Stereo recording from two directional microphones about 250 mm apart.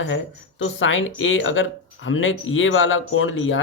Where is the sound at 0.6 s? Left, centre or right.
Left.